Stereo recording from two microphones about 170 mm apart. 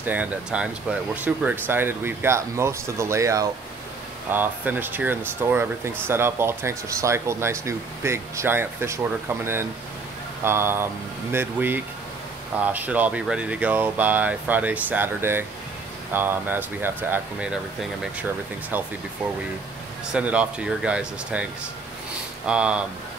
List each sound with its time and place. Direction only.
0.0 s speech: 10° right (ahead or behind)
20.1 s speech: 5° right (ahead or behind)
22.5 s speech: 5° right (ahead or behind)